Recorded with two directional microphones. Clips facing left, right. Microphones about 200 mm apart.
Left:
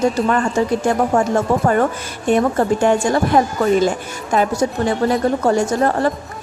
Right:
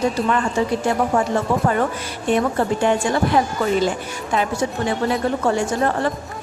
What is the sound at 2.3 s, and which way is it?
A woman's voice, 45° left (ahead or behind).